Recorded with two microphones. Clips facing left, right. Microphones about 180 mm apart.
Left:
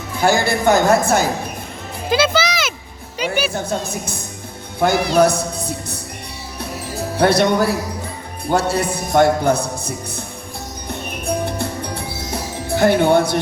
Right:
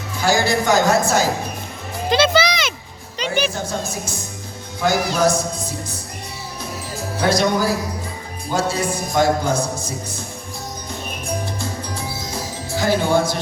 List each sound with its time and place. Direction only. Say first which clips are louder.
0.2 s a man's voice: left 1 dB; 55° left (ahead or behind)
2.0 s music: right 1 dB; 5° left (ahead or behind)
3.5 s a man's voice: left 3 dB; 60° left (ahead or behind)
7.2 s a man's voice: left 3 dB; 60° left (ahead or behind)
10.8 s music: left 6 dB; 60° left (ahead or behind)